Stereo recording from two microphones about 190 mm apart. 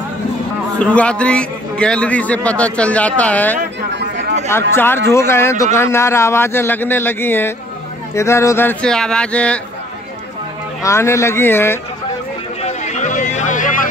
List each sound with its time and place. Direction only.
0.7 s a man's voice: 5° left (ahead or behind)
10.8 s a man's voice: 15° left (ahead or behind)
12.6 s a sound: 40° left (ahead or behind)